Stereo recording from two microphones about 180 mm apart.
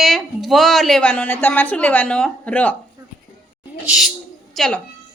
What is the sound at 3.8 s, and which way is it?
Speech, 5° right (ahead or behind).